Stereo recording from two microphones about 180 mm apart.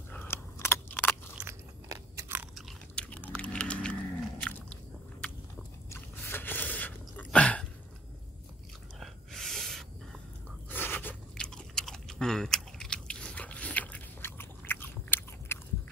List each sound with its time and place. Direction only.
0.1 s a sound: 15° left (ahead or behind)
1.4 s biting: 15° right (ahead or behind)
2.5 s chewing: 5° left (ahead or behind)
4.4 s biting: 5° left (ahead or behind)
5.9 s chewing: 10° left (ahead or behind)
7.2 s a sound: 5° left (ahead or behind)
9.0 s gasp: centre (ahead or behind)
10.7 s crunch: 10° left (ahead or behind)